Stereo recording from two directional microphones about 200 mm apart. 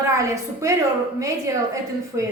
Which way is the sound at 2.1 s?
15° right (ahead or behind).